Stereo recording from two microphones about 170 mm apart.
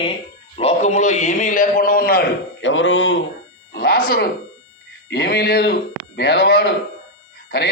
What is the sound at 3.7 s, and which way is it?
Speech, 70° left (ahead or behind).